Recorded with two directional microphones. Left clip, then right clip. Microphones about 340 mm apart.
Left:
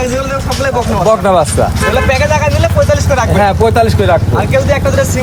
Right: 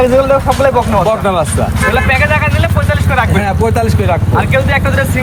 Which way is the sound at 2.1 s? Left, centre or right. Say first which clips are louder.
Even; centre.